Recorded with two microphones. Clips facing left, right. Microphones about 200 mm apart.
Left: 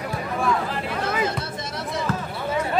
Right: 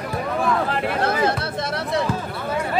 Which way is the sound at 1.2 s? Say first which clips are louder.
Right 5 dB; 65° right (ahead or behind).